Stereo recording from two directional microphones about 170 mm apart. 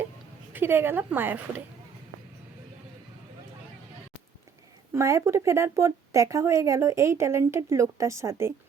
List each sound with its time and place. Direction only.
0.5 s speech: 10° right (ahead or behind)
4.9 s speech: 15° right (ahead or behind)